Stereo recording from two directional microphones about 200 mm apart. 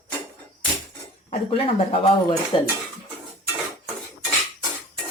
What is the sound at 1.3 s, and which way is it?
Speech, 30° left (ahead or behind).